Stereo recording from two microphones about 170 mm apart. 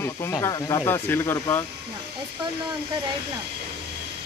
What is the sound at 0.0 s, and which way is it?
Speech, 15° left (ahead or behind).